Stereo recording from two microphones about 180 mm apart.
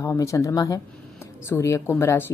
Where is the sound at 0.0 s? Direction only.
15° left (ahead or behind).